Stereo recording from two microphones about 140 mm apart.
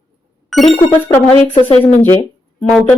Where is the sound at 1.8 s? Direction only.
15° left (ahead or behind).